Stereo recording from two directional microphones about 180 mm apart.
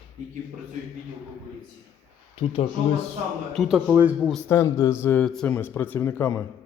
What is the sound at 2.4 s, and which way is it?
Speech, 30° left (ahead or behind).